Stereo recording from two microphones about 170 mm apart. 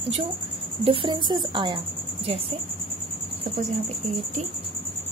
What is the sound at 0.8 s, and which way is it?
A woman's voice, 30° right (ahead or behind).